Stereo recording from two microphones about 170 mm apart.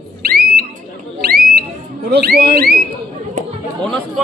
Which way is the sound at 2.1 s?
70° right (ahead or behind).